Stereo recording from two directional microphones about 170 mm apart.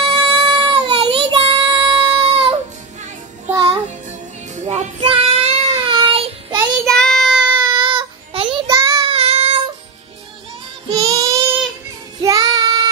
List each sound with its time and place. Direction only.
0.0 s child singing: 30° right (ahead or behind)
4.6 s child singing: 40° right (ahead or behind)
6.9 s child singing: 5° left (ahead or behind)
7.6 s child singing: 25° right (ahead or behind)
9.1 s child singing: 35° right (ahead or behind)
10.9 s child singing: 20° right (ahead or behind)